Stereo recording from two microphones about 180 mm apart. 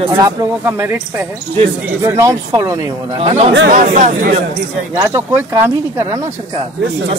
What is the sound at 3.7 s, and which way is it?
Speech, 45° right (ahead or behind).